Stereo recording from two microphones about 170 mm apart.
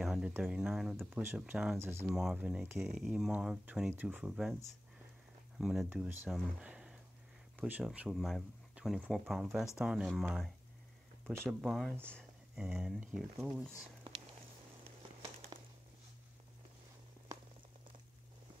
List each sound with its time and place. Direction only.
0.0 s speech: 5° right (ahead or behind)
1.8 s speech: 15° right (ahead or behind)
2.0 s speech: 5° right (ahead or behind)
5.6 s speech: 5° right (ahead or behind)
15.5 s a sound: 20° right (ahead or behind)